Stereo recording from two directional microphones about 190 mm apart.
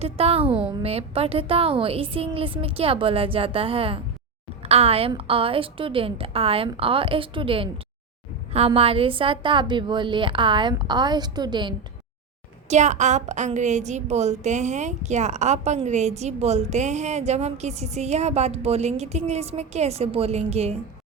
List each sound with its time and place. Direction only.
0.0 s a woman's voice: 30° right (ahead or behind)
0.4 s a woman's voice: 5° right (ahead or behind)
0.7 s a woman's voice: 30° right (ahead or behind)
12.6 s a woman's voice: 40° right (ahead or behind)